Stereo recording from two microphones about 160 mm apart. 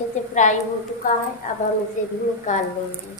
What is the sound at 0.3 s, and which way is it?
Speech, 50° left (ahead or behind).